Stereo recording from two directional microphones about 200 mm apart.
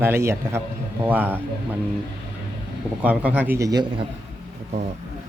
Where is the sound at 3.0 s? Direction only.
5° right (ahead or behind).